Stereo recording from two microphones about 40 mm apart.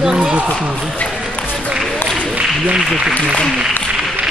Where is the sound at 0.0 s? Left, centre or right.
Centre.